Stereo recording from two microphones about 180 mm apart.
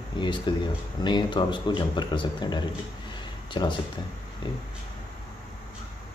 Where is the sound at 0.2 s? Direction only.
25° left (ahead or behind).